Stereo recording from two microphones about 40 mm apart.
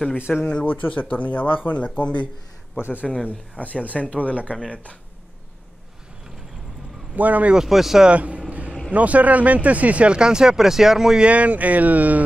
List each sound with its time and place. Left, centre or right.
0.3 s speech: left
0.7 s speech: left
2.0 s speech: left
2.8 s speech: right
3.3 s speech: left
7.2 s speech: right
7.5 s speech: centre
8.1 s speech: right
8.5 s vehicle: right
8.9 s speech: right
10.1 s speech: centre
11.2 s speech: right